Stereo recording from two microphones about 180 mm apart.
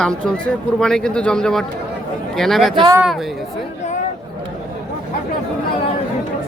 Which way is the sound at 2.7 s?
25° right (ahead or behind).